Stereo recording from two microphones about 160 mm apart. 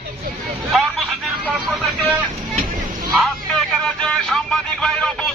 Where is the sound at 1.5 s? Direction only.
Centre (ahead or behind).